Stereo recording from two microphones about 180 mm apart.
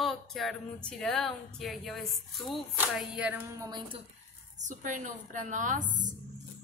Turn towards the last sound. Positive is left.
turn(degrees=-45)  # may be behind; listen again after turning